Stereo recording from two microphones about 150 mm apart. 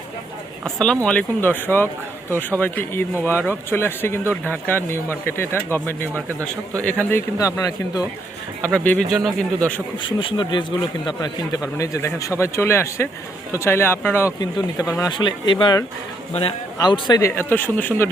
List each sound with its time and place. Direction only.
0.6 s speech: 5° left (ahead or behind)
7.3 s a man's voice: 20° left (ahead or behind)
8.6 s speech: 10° left (ahead or behind)
10.0 s a man's voice: 35° left (ahead or behind); by 14.3 s 15° left (ahead or behind)
15.1 s speech: 30° left (ahead or behind)
16.7 s speech: 25° left (ahead or behind)